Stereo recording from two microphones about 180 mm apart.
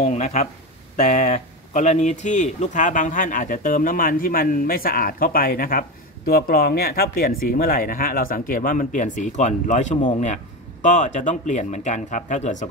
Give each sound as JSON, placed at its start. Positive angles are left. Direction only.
{"t": 0.0, "sound": "speech", "side_deg": 40}